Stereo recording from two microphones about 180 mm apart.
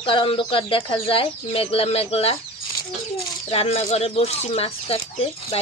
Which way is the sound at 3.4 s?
35° left (ahead or behind).